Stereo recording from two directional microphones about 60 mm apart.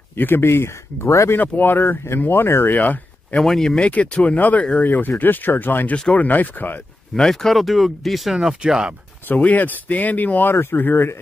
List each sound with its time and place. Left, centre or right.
0.1 s speech: left
1.3 s speech: left
2.8 s a sound: left
3.3 s speech: centre
3.7 s speech: left
7.2 s speech: centre
8.4 s speech: centre
9.3 s speech: left